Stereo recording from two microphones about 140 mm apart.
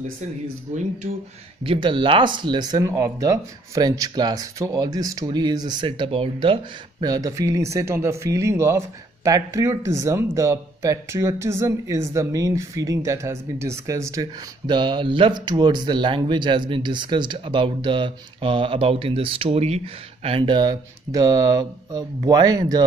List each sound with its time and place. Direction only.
0.7 s speech: 55° right (ahead or behind)
1.6 s speech: 40° right (ahead or behind)